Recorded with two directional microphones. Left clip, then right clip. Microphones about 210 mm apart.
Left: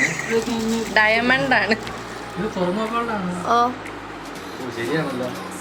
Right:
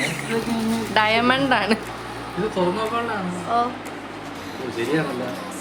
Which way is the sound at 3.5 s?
30° left (ahead or behind).